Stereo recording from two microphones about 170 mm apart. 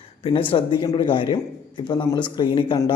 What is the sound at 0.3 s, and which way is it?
Speech, 30° left (ahead or behind).